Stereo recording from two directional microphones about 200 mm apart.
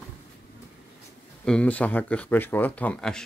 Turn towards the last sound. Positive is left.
turn(degrees=5)  # may be behind; listen again after turning